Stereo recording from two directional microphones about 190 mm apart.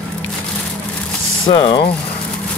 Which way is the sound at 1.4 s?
25° left (ahead or behind).